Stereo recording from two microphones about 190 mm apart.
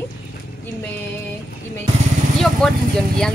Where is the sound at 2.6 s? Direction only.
5° left (ahead or behind).